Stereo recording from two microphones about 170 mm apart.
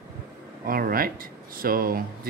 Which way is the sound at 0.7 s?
60° right (ahead or behind).